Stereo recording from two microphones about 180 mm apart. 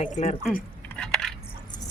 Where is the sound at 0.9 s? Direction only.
5° left (ahead or behind).